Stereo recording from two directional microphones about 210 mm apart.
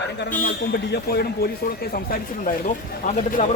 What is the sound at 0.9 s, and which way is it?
Speech, 50° left (ahead or behind).